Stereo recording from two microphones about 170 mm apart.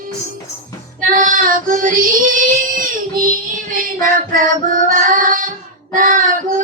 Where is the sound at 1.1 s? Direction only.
50° right (ahead or behind).